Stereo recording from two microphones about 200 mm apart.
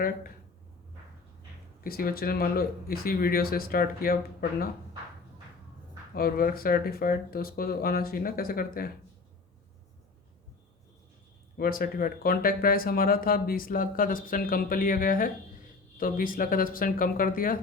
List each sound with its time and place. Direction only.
1.8 s speech: 45° left (ahead or behind)
6.1 s speech: 50° left (ahead or behind)
11.5 s speech: 45° left (ahead or behind)